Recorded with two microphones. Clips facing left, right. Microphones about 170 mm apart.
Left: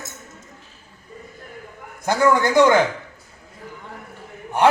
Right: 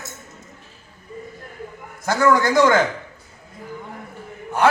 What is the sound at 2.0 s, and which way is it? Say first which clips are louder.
Speech: even; 15° left (ahead or behind).